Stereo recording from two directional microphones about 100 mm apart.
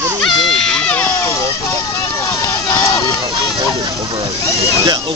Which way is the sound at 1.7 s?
30° left (ahead or behind).